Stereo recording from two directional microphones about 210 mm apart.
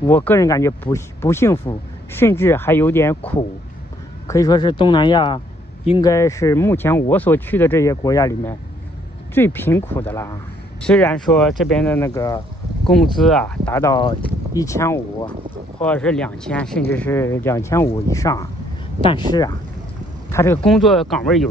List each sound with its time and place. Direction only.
0.0 s speech: 10° left (ahead or behind)
4.3 s speech: 20° left (ahead or behind)
12.8 s speech: centre (ahead or behind)
18.9 s speech: 25° left (ahead or behind)
20.2 s speech: 15° left (ahead or behind)
20.6 s speech: centre (ahead or behind)